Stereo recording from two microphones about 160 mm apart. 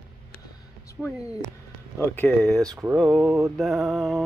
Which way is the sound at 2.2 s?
5° left (ahead or behind).